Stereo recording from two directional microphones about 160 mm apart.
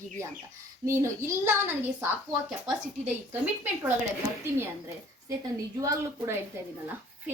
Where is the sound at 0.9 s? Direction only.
15° right (ahead or behind).